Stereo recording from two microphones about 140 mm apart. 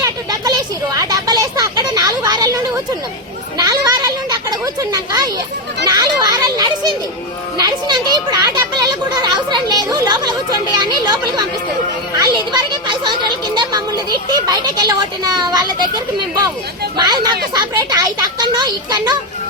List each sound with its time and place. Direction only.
0.0 s a sound: 25° right (ahead or behind)
3.6 s a child's voice: 30° right (ahead or behind)
17.0 s speech: 30° right (ahead or behind)